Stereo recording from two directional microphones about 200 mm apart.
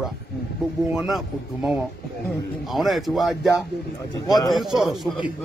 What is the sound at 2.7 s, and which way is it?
Speech, centre (ahead or behind).